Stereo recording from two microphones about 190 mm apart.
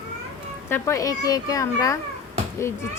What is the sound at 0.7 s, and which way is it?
A woman's voice, 15° left (ahead or behind).